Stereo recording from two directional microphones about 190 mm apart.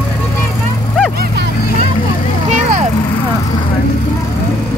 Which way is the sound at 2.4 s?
40° right (ahead or behind).